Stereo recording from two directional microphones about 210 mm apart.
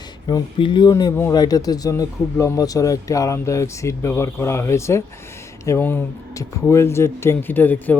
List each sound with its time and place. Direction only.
0.3 s speech: 20° left (ahead or behind)